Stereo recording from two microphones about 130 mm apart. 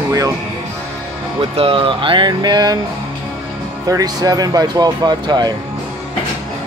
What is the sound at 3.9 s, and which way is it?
Speech, 30° right (ahead or behind).